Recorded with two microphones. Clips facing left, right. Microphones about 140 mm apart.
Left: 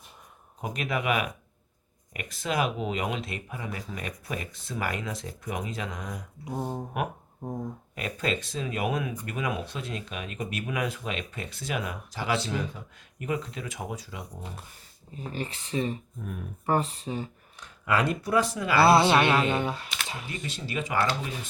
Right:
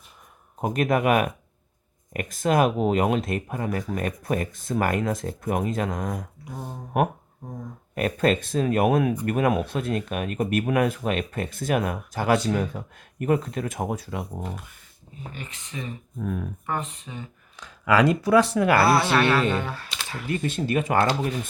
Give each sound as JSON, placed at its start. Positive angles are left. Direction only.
{"t": 0.6, "sound": "speech", "side_deg": -50}
{"t": 6.4, "sound": "speech", "side_deg": 25}
{"t": 7.9, "sound": "speech", "side_deg": -55}
{"t": 15.3, "sound": "speech", "side_deg": 35}
{"t": 17.6, "sound": "speech", "side_deg": -90}
{"t": 18.9, "sound": "speech", "side_deg": 20}
{"t": 20.3, "sound": "speech", "side_deg": -50}